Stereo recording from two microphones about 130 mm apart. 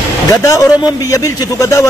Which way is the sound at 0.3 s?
25° left (ahead or behind).